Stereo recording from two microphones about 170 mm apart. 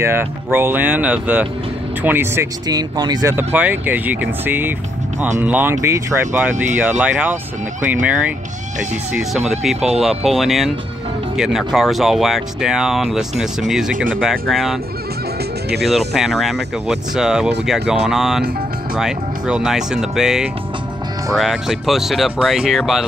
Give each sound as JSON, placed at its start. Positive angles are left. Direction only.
{"t": 0.0, "sound": "speech", "side_deg": -15}
{"t": 3.3, "sound": "speech", "side_deg": -10}
{"t": 9.6, "sound": "speech", "side_deg": 0}
{"t": 16.2, "sound": "speech", "side_deg": 0}